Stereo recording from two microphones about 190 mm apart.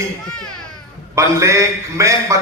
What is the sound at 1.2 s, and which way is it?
Speech, 15° right (ahead or behind).